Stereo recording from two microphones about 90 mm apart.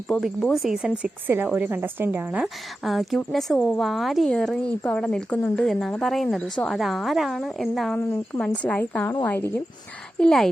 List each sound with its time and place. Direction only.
0.1 s speech: 20° left (ahead or behind)
0.5 s speech: 5° right (ahead or behind); by 2.4 s 20° right (ahead or behind)
2.4 s speech: centre (ahead or behind)
8.6 s speech: 15° left (ahead or behind)
10.2 s speech: 5° left (ahead or behind)